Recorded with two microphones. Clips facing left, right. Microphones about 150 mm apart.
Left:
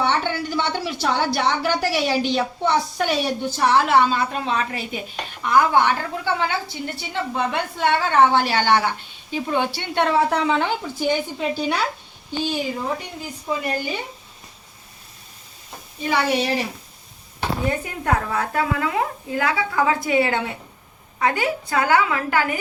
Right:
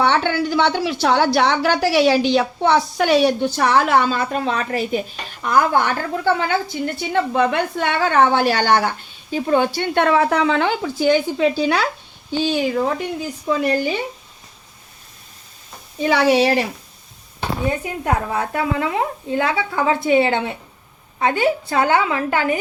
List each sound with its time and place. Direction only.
0.0 s a woman's voice: 90° right
16.0 s a woman's voice: 80° right
17.7 s a woman's voice: 20° right (ahead or behind)